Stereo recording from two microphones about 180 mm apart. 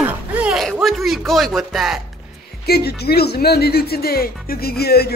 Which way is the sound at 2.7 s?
60° left (ahead or behind).